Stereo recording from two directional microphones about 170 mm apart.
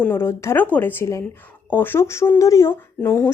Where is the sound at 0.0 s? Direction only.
15° left (ahead or behind).